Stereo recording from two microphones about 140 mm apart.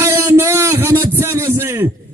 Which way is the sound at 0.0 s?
20° right (ahead or behind).